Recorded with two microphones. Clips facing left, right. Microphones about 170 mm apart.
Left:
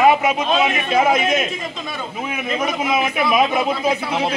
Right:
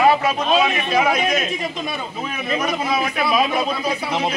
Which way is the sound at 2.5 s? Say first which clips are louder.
Even; 20° left (ahead or behind).